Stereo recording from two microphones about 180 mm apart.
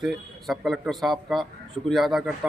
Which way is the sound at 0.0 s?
Centre (ahead or behind).